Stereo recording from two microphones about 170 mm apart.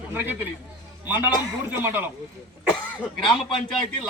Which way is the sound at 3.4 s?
Centre (ahead or behind).